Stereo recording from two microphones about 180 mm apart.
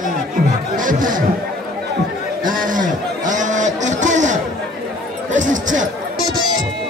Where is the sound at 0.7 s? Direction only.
50° right (ahead or behind).